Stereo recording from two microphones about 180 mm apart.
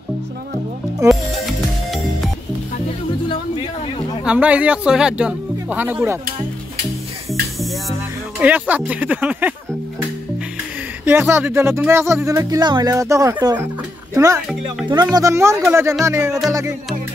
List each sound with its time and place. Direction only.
1.0 s music: centre (ahead or behind)
3.3 s a sound: 30° left (ahead or behind)
4.2 s speech: 5° right (ahead or behind)
8.4 s speech: 10° right (ahead or behind)
11.1 s speech: 10° right (ahead or behind)